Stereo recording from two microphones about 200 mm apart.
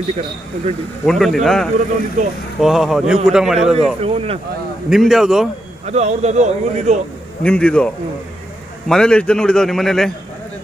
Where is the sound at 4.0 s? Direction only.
30° right (ahead or behind).